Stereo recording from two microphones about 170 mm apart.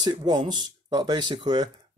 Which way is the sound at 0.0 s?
25° right (ahead or behind).